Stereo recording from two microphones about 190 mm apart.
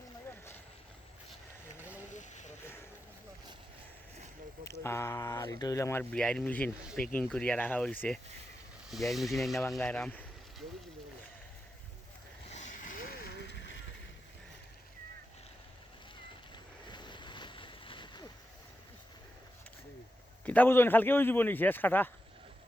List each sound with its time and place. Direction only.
0.3 s a sound: 15° left (ahead or behind)
1.8 s a sound: 10° right (ahead or behind)
2.1 s vehicle: 40° left (ahead or behind)
4.6 s speech: 15° left (ahead or behind)
12.5 s vehicle: 35° left (ahead or behind); by 13.8 s 70° left (ahead or behind)
16.9 s boat: 25° left (ahead or behind)
20.4 s speech: 10° left (ahead or behind)